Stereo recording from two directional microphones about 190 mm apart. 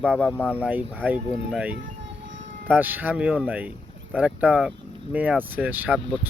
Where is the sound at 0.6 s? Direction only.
10° right (ahead or behind).